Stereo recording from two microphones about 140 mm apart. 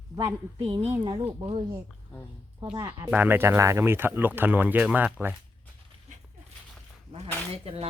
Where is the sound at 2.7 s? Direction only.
20° right (ahead or behind).